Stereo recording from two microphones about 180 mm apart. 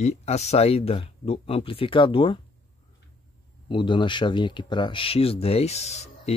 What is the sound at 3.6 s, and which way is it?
Speech, 25° left (ahead or behind).